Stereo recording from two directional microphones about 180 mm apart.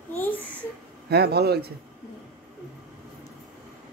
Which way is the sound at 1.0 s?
65° right (ahead or behind).